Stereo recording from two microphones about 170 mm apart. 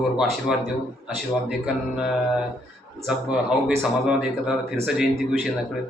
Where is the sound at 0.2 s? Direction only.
Centre (ahead or behind).